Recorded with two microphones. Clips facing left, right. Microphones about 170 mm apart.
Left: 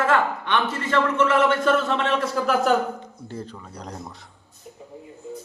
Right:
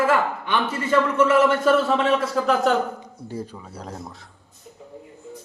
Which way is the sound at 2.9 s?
10° right (ahead or behind).